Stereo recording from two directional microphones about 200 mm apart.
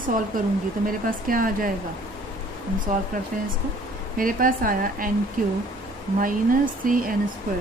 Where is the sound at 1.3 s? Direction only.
45° right (ahead or behind).